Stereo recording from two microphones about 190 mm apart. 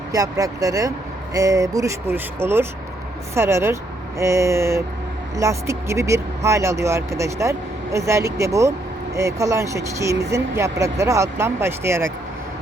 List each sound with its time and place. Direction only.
0.1 s speech: 20° right (ahead or behind)